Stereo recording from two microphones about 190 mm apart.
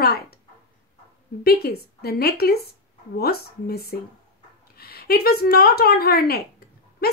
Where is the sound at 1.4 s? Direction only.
55° left (ahead or behind).